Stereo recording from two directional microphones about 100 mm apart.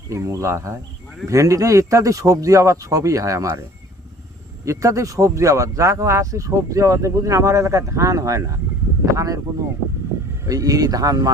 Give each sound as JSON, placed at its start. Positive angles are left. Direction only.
{"t": 0.1, "sound": "speech", "side_deg": -30}
{"t": 4.6, "sound": "speech", "side_deg": -30}
{"t": 10.4, "sound": "speech", "side_deg": -35}